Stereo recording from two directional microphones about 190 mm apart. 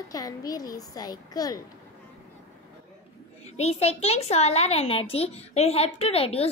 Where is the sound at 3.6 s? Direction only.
35° left (ahead or behind).